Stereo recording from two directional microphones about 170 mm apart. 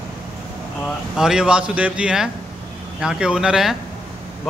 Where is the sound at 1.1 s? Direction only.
5° right (ahead or behind).